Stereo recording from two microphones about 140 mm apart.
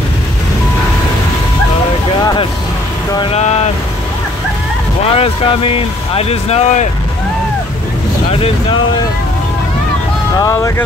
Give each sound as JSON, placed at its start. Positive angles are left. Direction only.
{"t": 3.3, "sound": "vehicle", "side_deg": 50}
{"t": 5.0, "sound": "speech", "side_deg": 45}
{"t": 8.3, "sound": "speech", "side_deg": 45}
{"t": 10.3, "sound": "speech", "side_deg": 25}